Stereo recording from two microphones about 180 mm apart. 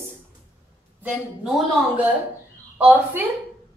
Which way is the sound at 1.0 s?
5° right (ahead or behind).